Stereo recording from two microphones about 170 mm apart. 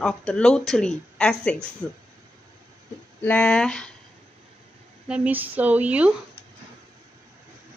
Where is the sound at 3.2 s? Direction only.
5° left (ahead or behind).